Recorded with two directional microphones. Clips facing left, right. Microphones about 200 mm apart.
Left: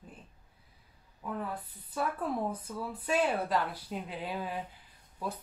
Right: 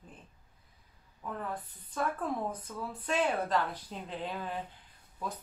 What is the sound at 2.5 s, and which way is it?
Speech, 10° left (ahead or behind).